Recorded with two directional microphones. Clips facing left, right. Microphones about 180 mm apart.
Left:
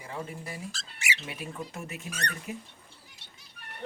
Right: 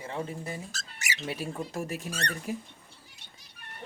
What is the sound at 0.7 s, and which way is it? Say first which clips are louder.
Speech: left 2 dB; 40° right (ahead or behind).